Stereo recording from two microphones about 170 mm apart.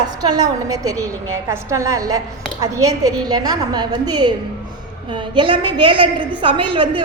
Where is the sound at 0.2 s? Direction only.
25° right (ahead or behind).